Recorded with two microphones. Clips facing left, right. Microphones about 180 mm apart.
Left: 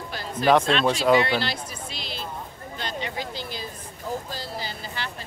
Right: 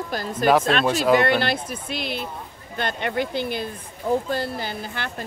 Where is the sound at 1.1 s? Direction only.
55° right (ahead or behind).